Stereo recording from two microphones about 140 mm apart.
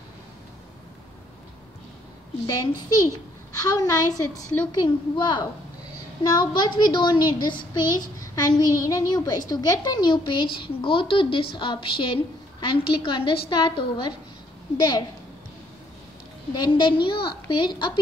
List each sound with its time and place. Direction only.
2.4 s a woman's voice: 30° left (ahead or behind)
16.5 s a woman's voice: 35° left (ahead or behind)